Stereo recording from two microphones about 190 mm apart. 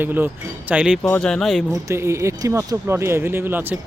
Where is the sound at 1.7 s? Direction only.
15° right (ahead or behind).